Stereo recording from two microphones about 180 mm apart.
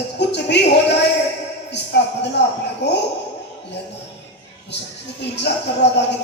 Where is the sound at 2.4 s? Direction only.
70° left (ahead or behind).